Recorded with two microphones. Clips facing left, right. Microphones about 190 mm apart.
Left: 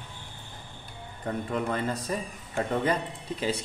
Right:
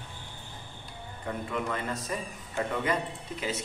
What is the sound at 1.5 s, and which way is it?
A man's voice, 35° left (ahead or behind).